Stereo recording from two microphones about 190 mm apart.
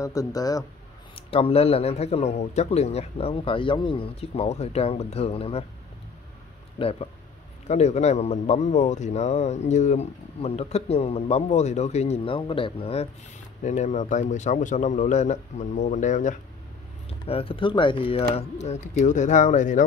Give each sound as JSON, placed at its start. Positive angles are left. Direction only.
{"t": 0.0, "sound": "speech", "side_deg": 20}
{"t": 1.1, "sound": "a man's voice", "side_deg": 30}
{"t": 6.8, "sound": "a man's voice", "side_deg": 30}
{"t": 17.2, "sound": "a man's voice", "side_deg": 30}